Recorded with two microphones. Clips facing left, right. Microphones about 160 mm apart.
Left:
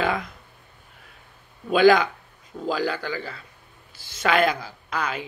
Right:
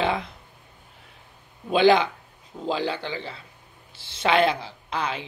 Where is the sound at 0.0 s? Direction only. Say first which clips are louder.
Even; 30° right (ahead or behind).